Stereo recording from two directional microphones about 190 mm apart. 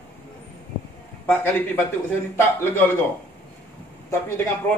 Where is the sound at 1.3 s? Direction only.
10° left (ahead or behind).